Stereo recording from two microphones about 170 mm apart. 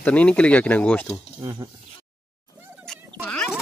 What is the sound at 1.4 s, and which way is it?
Speech, 25° right (ahead or behind).